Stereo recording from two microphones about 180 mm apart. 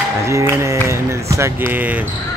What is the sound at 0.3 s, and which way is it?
Speech, 15° right (ahead or behind).